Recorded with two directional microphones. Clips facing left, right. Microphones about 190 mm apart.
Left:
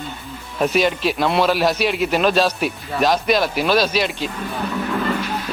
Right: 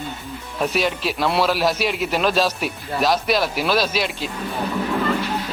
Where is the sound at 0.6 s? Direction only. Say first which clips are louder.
Left 4 dB; centre (ahead or behind).